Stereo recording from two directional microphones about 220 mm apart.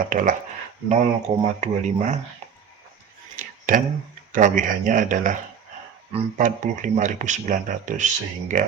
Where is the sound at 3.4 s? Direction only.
35° right (ahead or behind).